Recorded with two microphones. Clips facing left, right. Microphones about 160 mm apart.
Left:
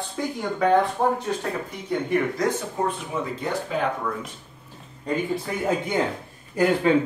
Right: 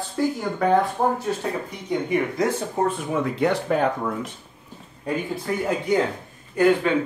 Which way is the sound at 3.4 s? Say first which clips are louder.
Right 6 dB; 70° right (ahead or behind).